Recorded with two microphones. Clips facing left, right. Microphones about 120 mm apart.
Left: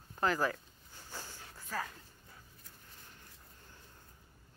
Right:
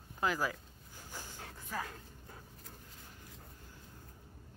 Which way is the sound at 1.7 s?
15° right (ahead or behind).